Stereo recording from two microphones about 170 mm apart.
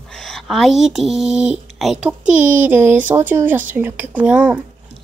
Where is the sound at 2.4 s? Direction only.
50° right (ahead or behind).